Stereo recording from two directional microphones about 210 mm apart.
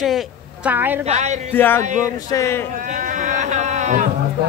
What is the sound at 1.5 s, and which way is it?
Speech, 10° left (ahead or behind).